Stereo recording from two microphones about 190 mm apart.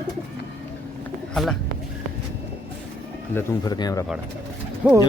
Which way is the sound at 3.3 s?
20° left (ahead or behind).